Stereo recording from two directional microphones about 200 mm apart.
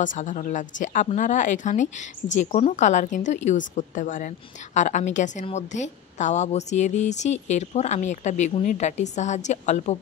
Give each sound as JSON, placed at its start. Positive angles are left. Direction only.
{"t": 0.0, "sound": "a woman's voice", "side_deg": 40}